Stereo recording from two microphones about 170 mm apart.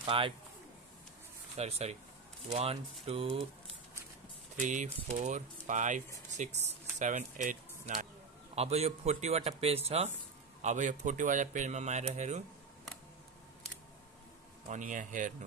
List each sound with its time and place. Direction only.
0.0 s speech: 30° right (ahead or behind)
1.6 s a man's voice: 40° right (ahead or behind)
4.6 s a man's voice: 45° right (ahead or behind)
14.7 s speech: 50° right (ahead or behind)